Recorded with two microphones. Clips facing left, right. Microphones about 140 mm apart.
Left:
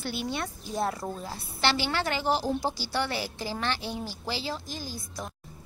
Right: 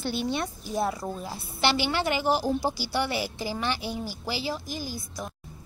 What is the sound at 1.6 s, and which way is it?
A woman's voice, 15° right (ahead or behind).